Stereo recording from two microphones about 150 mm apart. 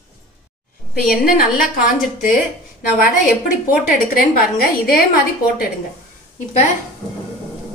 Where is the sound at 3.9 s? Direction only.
85° left.